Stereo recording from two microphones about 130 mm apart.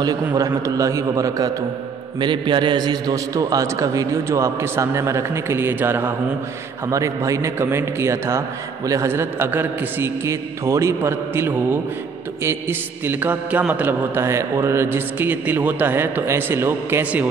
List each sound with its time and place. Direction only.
0.0 s a man's voice: 30° right (ahead or behind)
12.4 s mantra: 15° right (ahead or behind)